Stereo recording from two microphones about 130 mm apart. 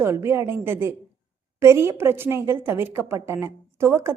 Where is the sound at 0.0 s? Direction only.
20° right (ahead or behind).